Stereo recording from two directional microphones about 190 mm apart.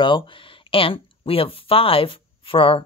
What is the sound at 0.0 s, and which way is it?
Speech, 25° left (ahead or behind).